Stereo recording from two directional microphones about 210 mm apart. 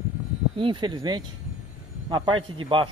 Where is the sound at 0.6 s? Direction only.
20° right (ahead or behind).